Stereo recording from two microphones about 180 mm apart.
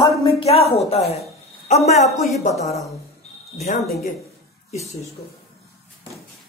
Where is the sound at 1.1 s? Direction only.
35° left (ahead or behind).